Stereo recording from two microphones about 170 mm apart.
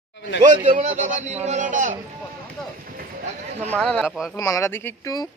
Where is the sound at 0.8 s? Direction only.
45° right (ahead or behind).